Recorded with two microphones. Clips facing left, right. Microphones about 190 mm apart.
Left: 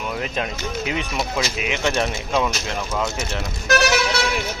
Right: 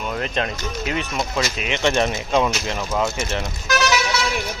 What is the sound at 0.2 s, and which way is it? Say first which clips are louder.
Speech: right 1 dB; 10° left (ahead or behind).